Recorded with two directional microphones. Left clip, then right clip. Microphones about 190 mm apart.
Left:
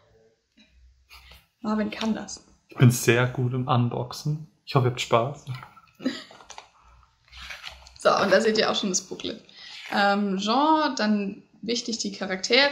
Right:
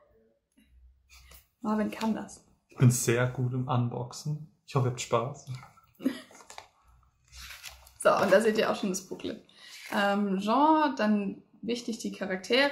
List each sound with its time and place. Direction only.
1.6 s speech: centre (ahead or behind)
2.7 s speech: 55° left (ahead or behind)
5.9 s hiccup: centre (ahead or behind)
7.4 s speech: centre (ahead or behind)